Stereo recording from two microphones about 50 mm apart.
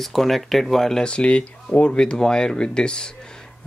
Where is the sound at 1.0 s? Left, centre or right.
Left.